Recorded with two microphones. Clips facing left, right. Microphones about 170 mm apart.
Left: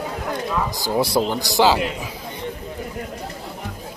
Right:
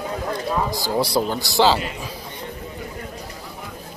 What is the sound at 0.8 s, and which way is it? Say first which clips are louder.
Speech: left 4 dB; 20° left (ahead or behind).